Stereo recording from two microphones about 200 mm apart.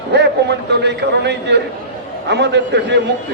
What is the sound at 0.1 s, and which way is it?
A man's voice, 60° right (ahead or behind).